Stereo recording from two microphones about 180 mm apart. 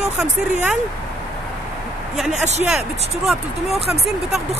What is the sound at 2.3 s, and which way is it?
Speech, 40° right (ahead or behind).